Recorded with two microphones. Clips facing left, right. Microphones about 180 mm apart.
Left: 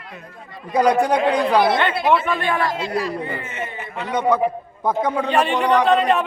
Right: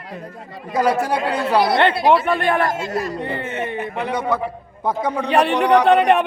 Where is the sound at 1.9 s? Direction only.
35° right (ahead or behind).